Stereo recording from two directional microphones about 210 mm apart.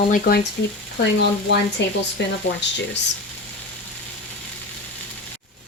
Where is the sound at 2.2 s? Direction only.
55° left (ahead or behind).